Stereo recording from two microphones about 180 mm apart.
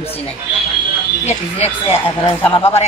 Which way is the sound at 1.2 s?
35° left (ahead or behind).